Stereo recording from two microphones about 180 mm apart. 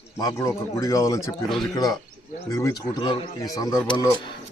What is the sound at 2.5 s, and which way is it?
A man's voice, 20° left (ahead or behind).